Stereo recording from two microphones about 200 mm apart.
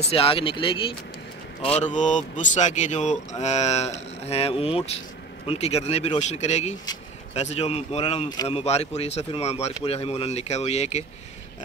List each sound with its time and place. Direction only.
0.1 s speech: 30° left (ahead or behind)
1.8 s speech: 35° left (ahead or behind)